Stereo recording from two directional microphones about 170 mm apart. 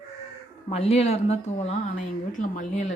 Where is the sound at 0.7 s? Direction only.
40° left (ahead or behind).